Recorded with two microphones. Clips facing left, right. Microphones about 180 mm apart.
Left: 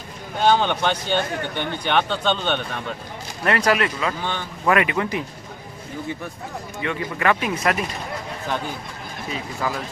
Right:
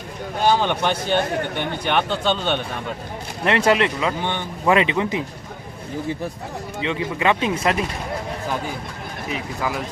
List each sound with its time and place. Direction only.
0.4 s speech: 5° right (ahead or behind)
3.4 s speech: 25° right (ahead or behind)
6.8 s speech: 20° right (ahead or behind)
9.3 s speech: 15° right (ahead or behind)